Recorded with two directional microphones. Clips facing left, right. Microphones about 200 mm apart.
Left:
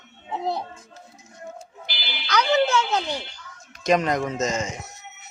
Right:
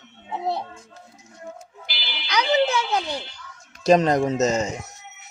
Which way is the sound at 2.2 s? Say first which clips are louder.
Even; 15° right (ahead or behind).